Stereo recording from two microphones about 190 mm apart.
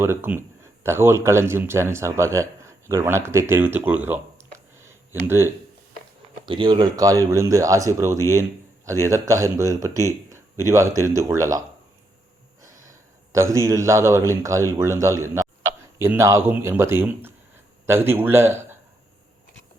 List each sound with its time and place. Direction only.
0.0 s speech: 10° right (ahead or behind)
6.4 s speech: 25° right (ahead or behind)
12.6 s snort: 45° right (ahead or behind)
13.3 s speech: 15° right (ahead or behind)